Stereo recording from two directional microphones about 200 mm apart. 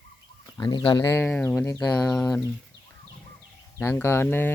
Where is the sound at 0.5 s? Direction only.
20° left (ahead or behind).